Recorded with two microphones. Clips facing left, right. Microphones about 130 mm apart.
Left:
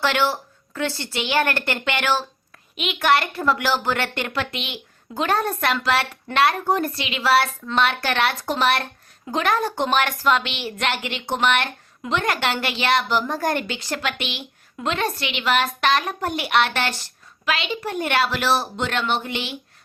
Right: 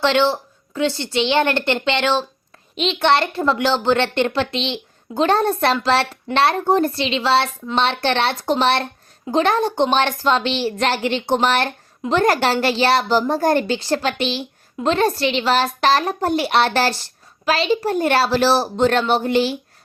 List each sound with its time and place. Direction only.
0.0 s a woman's voice: 25° right (ahead or behind)